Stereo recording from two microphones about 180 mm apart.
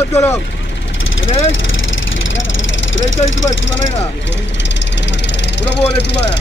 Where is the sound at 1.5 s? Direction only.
90° left.